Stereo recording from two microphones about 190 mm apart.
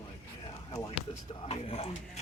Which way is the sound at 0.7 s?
25° left (ahead or behind).